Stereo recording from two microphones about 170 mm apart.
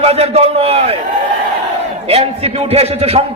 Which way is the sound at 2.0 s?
35° right (ahead or behind).